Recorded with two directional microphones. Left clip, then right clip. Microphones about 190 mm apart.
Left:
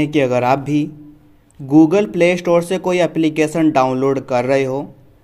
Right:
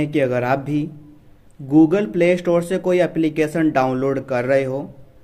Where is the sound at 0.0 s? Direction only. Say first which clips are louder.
Left 4 dB; 20° left (ahead or behind).